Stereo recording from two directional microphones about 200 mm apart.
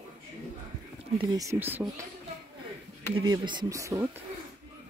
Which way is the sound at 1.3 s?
15° right (ahead or behind).